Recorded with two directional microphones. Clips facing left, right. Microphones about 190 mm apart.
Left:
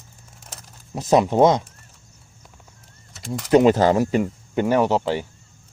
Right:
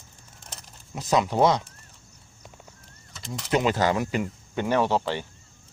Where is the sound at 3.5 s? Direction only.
35° left (ahead or behind).